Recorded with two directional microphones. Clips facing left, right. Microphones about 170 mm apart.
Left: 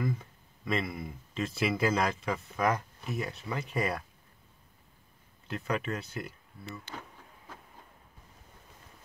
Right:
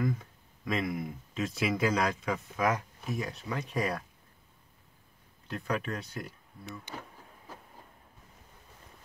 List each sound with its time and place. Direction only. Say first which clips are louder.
0.0 s speech: right 2 dB; centre (ahead or behind)
5.5 s speech: left 1 dB; 5° left (ahead or behind)